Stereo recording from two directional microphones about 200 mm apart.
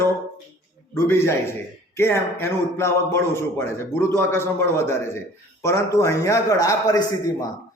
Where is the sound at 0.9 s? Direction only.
10° left (ahead or behind).